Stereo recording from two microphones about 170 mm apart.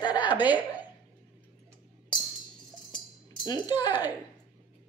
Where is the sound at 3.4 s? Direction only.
25° left (ahead or behind).